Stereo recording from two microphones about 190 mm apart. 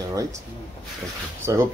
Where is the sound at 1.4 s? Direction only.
15° right (ahead or behind).